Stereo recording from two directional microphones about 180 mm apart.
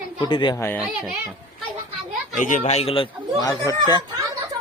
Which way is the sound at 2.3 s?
45° left (ahead or behind).